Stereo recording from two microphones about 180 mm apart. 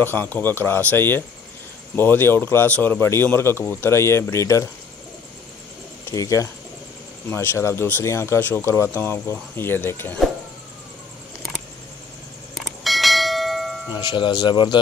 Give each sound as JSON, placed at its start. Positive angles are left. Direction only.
{"t": 0.0, "sound": "speech", "side_deg": 10}
{"t": 6.1, "sound": "speech", "side_deg": 15}
{"t": 12.5, "sound": "bell", "side_deg": 0}
{"t": 13.9, "sound": "speech", "side_deg": 25}